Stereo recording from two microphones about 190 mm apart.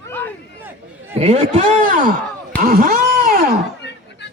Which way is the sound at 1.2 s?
35° right (ahead or behind).